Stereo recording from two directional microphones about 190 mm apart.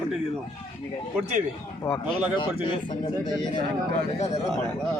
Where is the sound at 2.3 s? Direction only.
25° left (ahead or behind).